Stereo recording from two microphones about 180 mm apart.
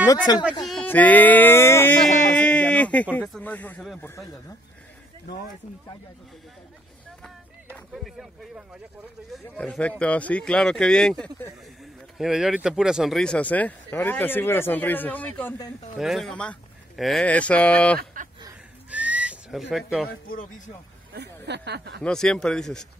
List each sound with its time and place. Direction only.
0.3 s speech: 20° left (ahead or behind)
0.7 s music: 5° left (ahead or behind)
2.3 s a sound: 5° left (ahead or behind)
7.9 s speech: 5° right (ahead or behind)
16.0 s speech: centre (ahead or behind)
18.9 s whistling: 10° right (ahead or behind)
20.1 s speech: 55° left (ahead or behind)
21.5 s speech: 70° right (ahead or behind)
22.0 s speech: 5° left (ahead or behind)